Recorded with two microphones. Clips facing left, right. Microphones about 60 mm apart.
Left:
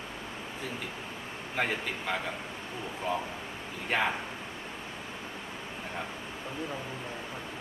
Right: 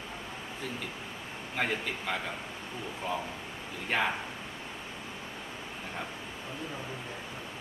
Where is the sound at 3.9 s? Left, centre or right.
Centre.